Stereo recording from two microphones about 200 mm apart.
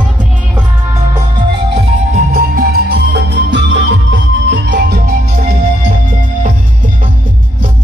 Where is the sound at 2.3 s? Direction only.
50° right (ahead or behind).